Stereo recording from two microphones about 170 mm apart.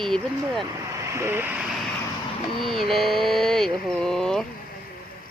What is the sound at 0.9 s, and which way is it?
Speech, 20° right (ahead or behind).